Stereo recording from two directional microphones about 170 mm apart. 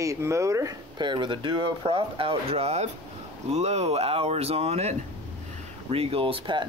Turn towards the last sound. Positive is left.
turn(degrees=-30)  # may be behind; listen again after turning